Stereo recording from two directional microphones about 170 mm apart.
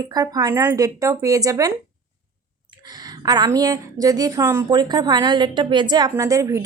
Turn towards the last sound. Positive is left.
turn(degrees=-20)  # may be behind; listen again after turning